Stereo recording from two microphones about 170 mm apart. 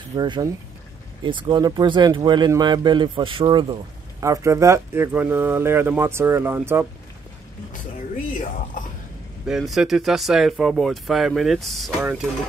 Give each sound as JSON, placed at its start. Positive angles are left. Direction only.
{"t": 0.1, "sound": "speech", "side_deg": -25}
{"t": 4.2, "sound": "speech", "side_deg": -20}
{"t": 9.5, "sound": "speech", "side_deg": 0}